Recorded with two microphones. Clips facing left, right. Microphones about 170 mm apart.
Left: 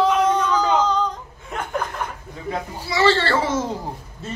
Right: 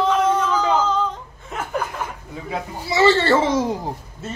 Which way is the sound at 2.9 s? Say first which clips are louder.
Right 3 dB; 20° right (ahead or behind).